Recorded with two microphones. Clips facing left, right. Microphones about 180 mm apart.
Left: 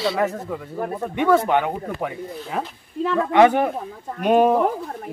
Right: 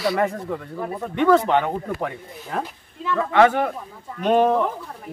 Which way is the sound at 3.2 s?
15° left (ahead or behind).